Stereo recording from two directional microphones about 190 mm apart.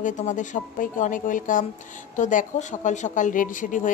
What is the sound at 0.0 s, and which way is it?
A woman's voice, 40° left (ahead or behind).